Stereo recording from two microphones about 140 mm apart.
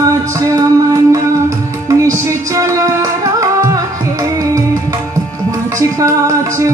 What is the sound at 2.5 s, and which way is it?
Music, 25° right (ahead or behind).